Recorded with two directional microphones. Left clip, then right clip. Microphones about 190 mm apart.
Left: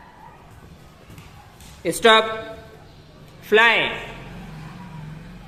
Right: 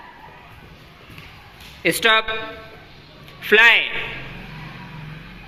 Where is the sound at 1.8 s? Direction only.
10° left (ahead or behind).